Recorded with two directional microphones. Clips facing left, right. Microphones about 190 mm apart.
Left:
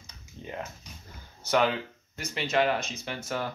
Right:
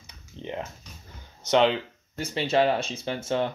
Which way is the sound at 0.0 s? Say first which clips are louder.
Right 5 dB; 25° right (ahead or behind).